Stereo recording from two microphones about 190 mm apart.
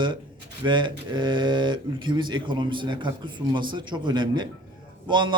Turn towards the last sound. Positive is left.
turn(degrees=-25)  # may be behind; listen again after turning